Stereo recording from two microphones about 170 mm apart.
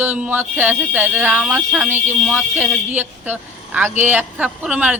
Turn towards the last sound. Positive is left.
turn(degrees=-5)  # may be behind; listen again after turning